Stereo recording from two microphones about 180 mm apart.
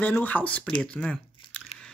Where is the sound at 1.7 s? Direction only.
35° left (ahead or behind).